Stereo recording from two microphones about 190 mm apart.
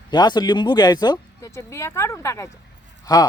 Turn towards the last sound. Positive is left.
turn(degrees=20)  # may be behind; listen again after turning